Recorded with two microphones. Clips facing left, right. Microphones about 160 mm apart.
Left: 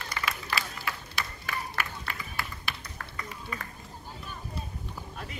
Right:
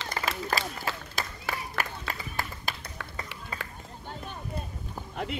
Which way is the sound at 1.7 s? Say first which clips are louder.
Right 2 dB; 40° right (ahead or behind).